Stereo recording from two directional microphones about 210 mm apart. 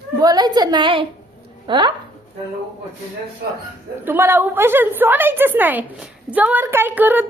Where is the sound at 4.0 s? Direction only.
10° right (ahead or behind).